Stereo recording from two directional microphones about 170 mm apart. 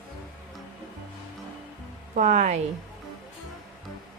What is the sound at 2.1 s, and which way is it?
Speech, 50° right (ahead or behind).